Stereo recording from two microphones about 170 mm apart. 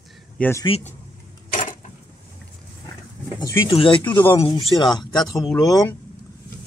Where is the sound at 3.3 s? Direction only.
25° left (ahead or behind).